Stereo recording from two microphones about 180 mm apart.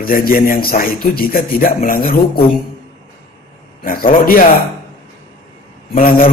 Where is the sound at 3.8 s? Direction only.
50° left (ahead or behind).